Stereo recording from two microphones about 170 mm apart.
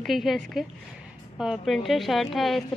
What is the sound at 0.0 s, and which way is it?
A woman's voice, centre (ahead or behind).